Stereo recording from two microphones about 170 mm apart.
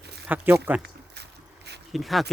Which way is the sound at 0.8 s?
75° right (ahead or behind).